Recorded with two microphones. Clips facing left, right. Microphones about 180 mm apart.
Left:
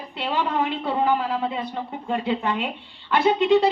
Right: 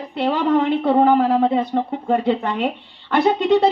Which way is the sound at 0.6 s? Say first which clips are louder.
Right 8 dB; 50° right (ahead or behind).